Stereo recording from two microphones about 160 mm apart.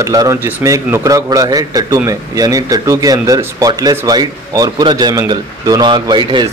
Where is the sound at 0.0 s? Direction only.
20° right (ahead or behind).